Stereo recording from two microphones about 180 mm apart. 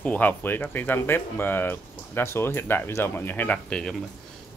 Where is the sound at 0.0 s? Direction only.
10° left (ahead or behind).